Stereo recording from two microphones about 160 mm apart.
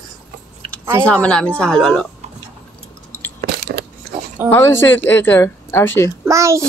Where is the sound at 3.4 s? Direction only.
90° right.